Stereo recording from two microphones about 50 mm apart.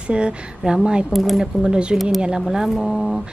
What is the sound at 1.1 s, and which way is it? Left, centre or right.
Speech, centre.